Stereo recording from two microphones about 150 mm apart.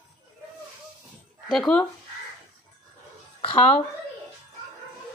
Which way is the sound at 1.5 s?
5° left (ahead or behind).